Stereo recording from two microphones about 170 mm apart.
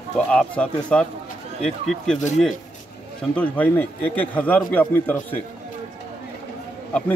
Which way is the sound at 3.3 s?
10° left (ahead or behind).